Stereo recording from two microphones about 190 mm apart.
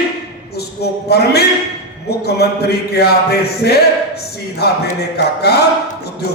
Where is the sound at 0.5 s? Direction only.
60° left (ahead or behind).